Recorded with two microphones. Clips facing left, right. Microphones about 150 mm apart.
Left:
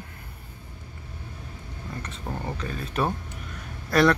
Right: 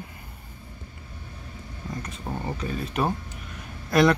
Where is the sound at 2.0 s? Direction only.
10° right (ahead or behind).